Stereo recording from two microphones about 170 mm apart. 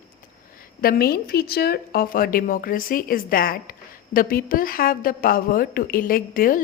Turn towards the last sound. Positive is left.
turn(degrees=55)  # may be behind; listen again after turning